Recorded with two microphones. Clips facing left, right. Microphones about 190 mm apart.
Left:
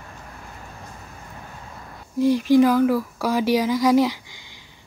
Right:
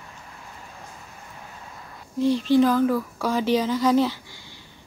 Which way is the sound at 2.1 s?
10° left (ahead or behind).